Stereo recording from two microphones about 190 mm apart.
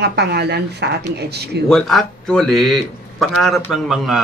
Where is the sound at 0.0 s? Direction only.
60° right (ahead or behind).